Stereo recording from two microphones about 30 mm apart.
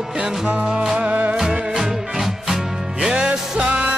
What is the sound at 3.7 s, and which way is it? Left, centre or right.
Music, right.